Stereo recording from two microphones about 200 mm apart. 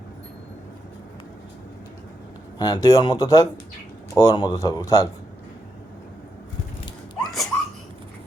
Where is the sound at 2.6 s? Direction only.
20° left (ahead or behind).